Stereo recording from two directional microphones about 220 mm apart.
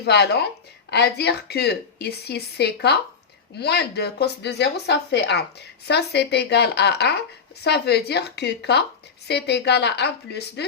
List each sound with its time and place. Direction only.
0.0 s speech: 50° left (ahead or behind)